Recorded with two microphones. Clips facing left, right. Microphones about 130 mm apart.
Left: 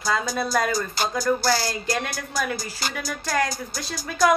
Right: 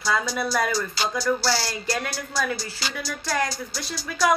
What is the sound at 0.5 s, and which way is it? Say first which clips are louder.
Music: left 1 dB; 50° left (ahead or behind).